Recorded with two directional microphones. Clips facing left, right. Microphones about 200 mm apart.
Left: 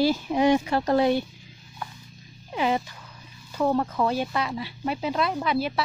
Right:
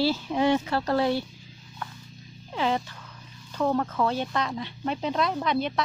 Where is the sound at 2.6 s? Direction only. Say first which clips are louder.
Left 2 dB; 10° left (ahead or behind).